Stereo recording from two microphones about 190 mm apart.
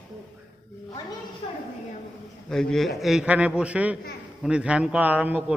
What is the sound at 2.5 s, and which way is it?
A man's voice, 5° left (ahead or behind).